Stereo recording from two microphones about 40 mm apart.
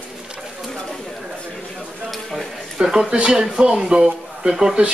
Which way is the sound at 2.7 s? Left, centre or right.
Centre.